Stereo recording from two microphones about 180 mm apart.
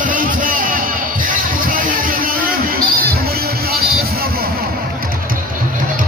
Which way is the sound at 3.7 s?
60° right (ahead or behind).